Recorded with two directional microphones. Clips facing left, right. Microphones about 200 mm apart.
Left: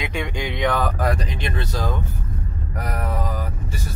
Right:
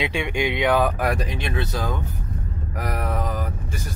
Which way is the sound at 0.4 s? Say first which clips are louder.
Right 3 dB; 15° right (ahead or behind).